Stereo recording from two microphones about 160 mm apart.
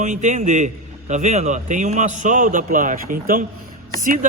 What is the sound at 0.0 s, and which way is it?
A man's voice, 50° right (ahead or behind).